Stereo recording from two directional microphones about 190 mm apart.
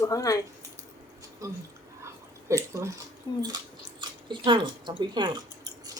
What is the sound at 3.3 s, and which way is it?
Speech, 20° left (ahead or behind).